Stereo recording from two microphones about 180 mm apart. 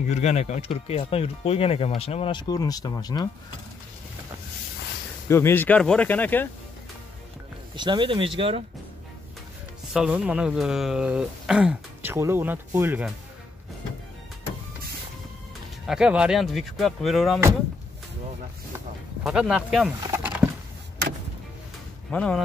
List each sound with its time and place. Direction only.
0.1 s speech: 40° left (ahead or behind); by 3.3 s 20° left (ahead or behind)
5.3 s speech: 15° left (ahead or behind)
7.7 s speech: 25° right (ahead or behind)
9.9 s speech: 5° right (ahead or behind)
15.9 s speech: 5° right (ahead or behind)
19.2 s speech: 5° right (ahead or behind)
20.0 s a sound: 15° right (ahead or behind)
22.1 s speech: 5° left (ahead or behind)